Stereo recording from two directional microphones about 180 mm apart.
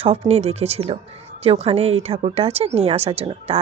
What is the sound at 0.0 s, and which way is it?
A woman's voice, 35° right (ahead or behind).